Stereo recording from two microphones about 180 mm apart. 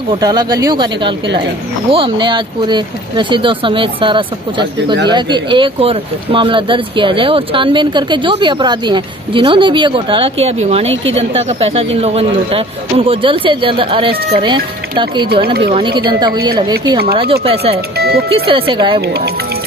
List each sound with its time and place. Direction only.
0.2 s a woman's voice: 20° right (ahead or behind)
17.9 s speech: 60° right (ahead or behind)
18.3 s speech: 30° right (ahead or behind)
18.9 s speech: 60° right (ahead or behind)